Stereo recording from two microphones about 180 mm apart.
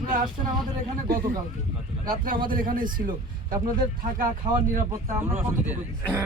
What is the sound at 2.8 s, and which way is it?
A man's voice, 25° right (ahead or behind).